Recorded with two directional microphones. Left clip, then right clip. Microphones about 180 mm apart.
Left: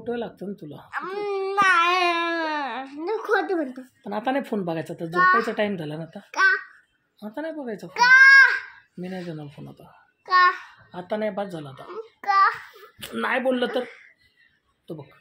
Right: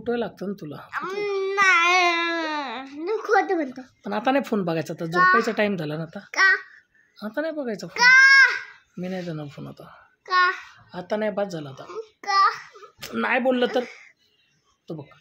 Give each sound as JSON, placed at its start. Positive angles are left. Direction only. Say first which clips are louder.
{"t": 0.0, "sound": "speech", "louder": "right 3 dB", "side_deg": -40}
{"t": 0.8, "sound": "baby cry", "louder": "right 1 dB", "side_deg": -10}
{"t": 4.0, "sound": "speech", "louder": "right 3 dB", "side_deg": -35}
{"t": 5.1, "sound": "a child's voice", "louder": "right 1 dB", "side_deg": -5}
{"t": 5.4, "sound": "speech", "louder": "right 2 dB", "side_deg": -35}
{"t": 6.3, "sound": "babbling", "louder": "right 1 dB", "side_deg": -10}
{"t": 7.2, "sound": "speech", "louder": "right 4 dB", "side_deg": -40}
{"t": 7.9, "sound": "a sound", "louder": "left 1 dB", "side_deg": -5}
{"t": 9.0, "sound": "speech", "louder": "right 3 dB", "side_deg": -40}
{"t": 10.2, "sound": "a child's voice", "louder": "left 2 dB", "side_deg": 0}
{"t": 10.9, "sound": "speech", "louder": "right 1 dB", "side_deg": -30}
{"t": 11.8, "sound": "babbling", "louder": "left 1 dB", "side_deg": -5}
{"t": 13.0, "sound": "speech", "louder": "right 2 dB", "side_deg": -30}